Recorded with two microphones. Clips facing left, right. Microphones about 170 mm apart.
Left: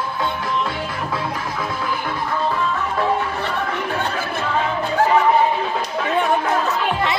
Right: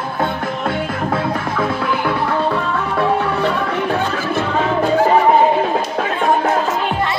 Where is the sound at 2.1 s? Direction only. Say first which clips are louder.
Right 5 dB; 65° right (ahead or behind).